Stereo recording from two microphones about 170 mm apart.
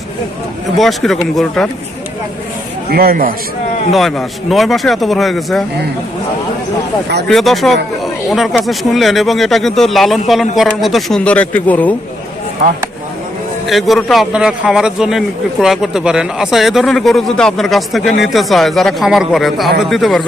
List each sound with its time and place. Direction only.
0.8 s a man's voice: centre (ahead or behind)
2.9 s a man's voice: 60° right (ahead or behind)
3.9 s a man's voice: centre (ahead or behind)
7.3 s a man's voice: centre (ahead or behind)
13.7 s a man's voice: centre (ahead or behind)